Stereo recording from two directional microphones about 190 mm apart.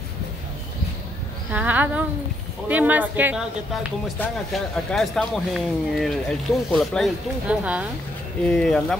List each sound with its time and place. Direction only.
1.5 s speech: 10° right (ahead or behind)
4.2 s speech: centre (ahead or behind)
8.5 s speech: 5° left (ahead or behind)